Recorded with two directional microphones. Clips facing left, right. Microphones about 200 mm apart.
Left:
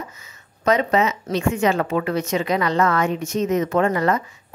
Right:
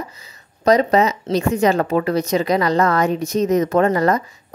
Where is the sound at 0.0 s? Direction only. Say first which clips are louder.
Right 3 dB; 35° right (ahead or behind).